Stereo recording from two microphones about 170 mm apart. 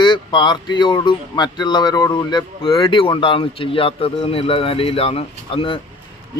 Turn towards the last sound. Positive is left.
turn(degrees=30)  # may be behind; listen again after turning